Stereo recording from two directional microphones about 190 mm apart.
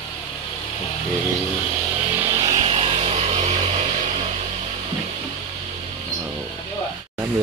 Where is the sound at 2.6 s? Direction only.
30° right (ahead or behind).